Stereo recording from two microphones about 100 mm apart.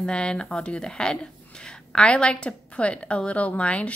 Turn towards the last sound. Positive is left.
turn(degrees=10)  # may be behind; listen again after turning